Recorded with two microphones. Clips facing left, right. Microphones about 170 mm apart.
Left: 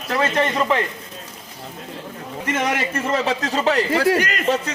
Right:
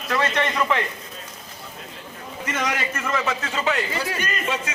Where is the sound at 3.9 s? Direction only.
75° left (ahead or behind).